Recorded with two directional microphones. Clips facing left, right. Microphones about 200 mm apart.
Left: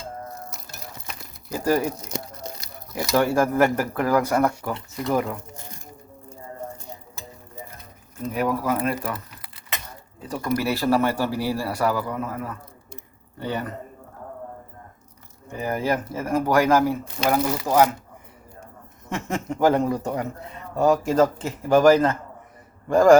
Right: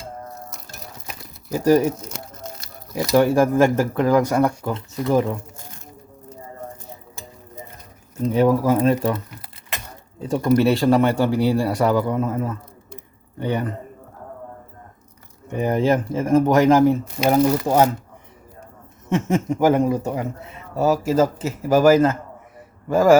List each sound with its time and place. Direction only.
1.5 s speech: 20° right (ahead or behind)
2.9 s speech: 15° right (ahead or behind)
8.2 s a man's voice: 30° right (ahead or behind)
15.4 s speech: 20° right (ahead or behind)
19.3 s a man's voice: 15° right (ahead or behind)